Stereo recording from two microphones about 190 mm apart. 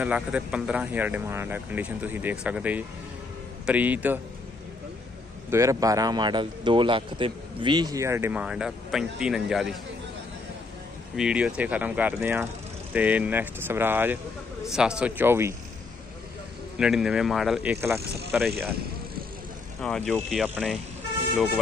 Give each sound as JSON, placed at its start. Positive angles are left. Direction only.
{"t": 0.0, "sound": "speech", "side_deg": -5}
{"t": 5.5, "sound": "speech", "side_deg": -15}
{"t": 11.1, "sound": "speech", "side_deg": -5}
{"t": 16.7, "sound": "speech", "side_deg": -5}
{"t": 20.1, "sound": "speech", "side_deg": 0}